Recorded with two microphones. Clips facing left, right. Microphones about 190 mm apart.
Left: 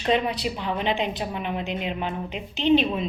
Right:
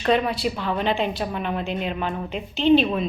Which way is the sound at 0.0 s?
20° left (ahead or behind).